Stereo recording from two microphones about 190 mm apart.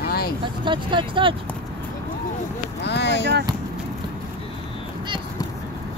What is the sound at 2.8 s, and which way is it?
Vehicle, 65° left (ahead or behind).